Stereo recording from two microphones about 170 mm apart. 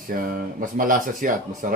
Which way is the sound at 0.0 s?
55° right (ahead or behind).